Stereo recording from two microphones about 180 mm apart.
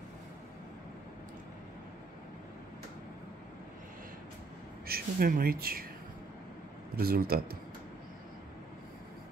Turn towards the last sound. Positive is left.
turn(degrees=-55)  # may be behind; listen again after turning